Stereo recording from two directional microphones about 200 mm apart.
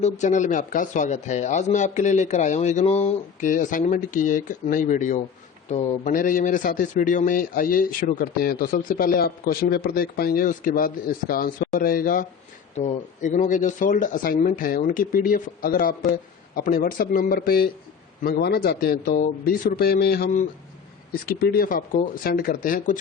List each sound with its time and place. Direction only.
0.0 s a man's voice: 35° left (ahead or behind)